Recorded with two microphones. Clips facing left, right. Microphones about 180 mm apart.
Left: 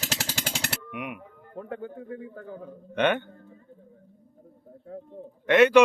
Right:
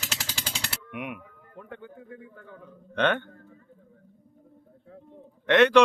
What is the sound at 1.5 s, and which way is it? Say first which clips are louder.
A man's voice: left 7 dB; 35° left (ahead or behind).